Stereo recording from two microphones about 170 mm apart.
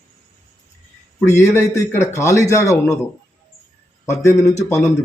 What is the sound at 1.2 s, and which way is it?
Speech, 15° left (ahead or behind).